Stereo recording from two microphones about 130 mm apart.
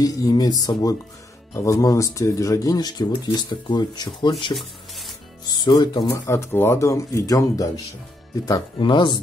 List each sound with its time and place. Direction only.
0.0 s speech: 30° left (ahead or behind)
4.6 s a sound: centre (ahead or behind)
5.5 s speech: 35° left (ahead or behind)
6.0 s speech: 20° left (ahead or behind); by 9.2 s 35° left (ahead or behind)